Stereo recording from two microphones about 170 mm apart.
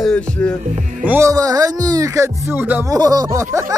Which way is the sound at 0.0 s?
5° left (ahead or behind).